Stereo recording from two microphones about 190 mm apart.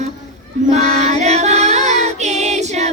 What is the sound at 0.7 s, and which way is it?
Music, 35° right (ahead or behind).